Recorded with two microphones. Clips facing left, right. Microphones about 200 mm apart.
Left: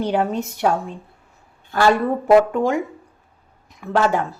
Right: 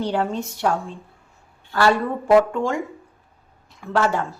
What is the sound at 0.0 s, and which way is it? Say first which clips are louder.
A woman's voice: left 3 dB; 15° left (ahead or behind).